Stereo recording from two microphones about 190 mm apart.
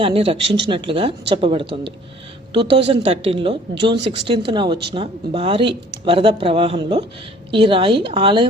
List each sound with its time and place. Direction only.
0.0 s speech: 30° right (ahead or behind)